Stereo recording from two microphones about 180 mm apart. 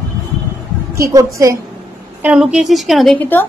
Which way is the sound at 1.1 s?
15° right (ahead or behind).